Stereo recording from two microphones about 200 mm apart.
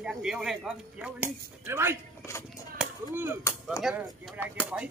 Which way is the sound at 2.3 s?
15° left (ahead or behind).